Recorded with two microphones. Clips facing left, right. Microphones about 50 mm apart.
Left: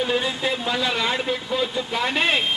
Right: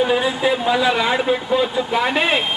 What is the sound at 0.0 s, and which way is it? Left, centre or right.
A man's voice, centre.